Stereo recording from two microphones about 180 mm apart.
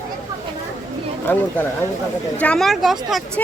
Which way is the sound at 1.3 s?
10° left (ahead or behind).